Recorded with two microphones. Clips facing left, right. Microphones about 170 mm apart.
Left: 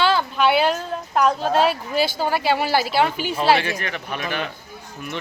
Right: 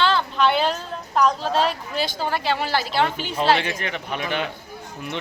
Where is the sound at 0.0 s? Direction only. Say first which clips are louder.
Left 1 dB; 10° left (ahead or behind).